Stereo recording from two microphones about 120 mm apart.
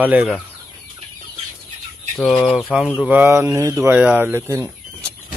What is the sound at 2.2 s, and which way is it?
Speech, centre (ahead or behind).